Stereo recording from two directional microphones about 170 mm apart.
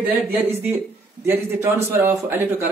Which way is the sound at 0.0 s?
10° right (ahead or behind).